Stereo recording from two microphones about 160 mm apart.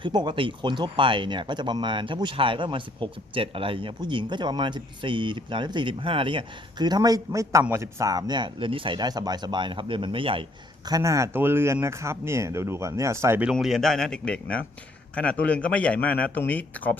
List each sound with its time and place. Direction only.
0.0 s speech: 30° right (ahead or behind)
10.8 s speech: 20° right (ahead or behind)
13.5 s a man's voice: centre (ahead or behind)